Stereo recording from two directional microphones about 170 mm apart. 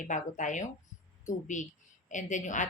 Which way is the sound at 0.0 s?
45° left (ahead or behind).